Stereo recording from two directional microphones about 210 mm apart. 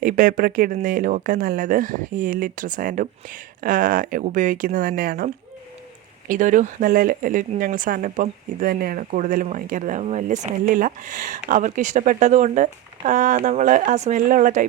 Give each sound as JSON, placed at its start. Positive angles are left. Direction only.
{"t": 0.0, "sound": "speech", "side_deg": -40}